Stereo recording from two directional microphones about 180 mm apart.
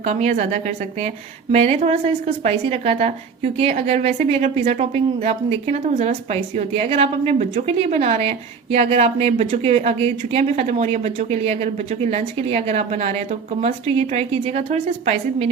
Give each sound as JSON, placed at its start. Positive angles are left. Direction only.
{"t": 0.0, "sound": "a woman's voice", "side_deg": -40}